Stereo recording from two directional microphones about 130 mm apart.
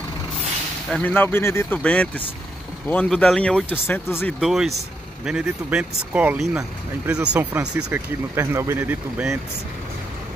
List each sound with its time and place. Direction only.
1.0 s speech: 15° left (ahead or behind)
4.4 s speech: centre (ahead or behind); by 8.9 s 20° right (ahead or behind)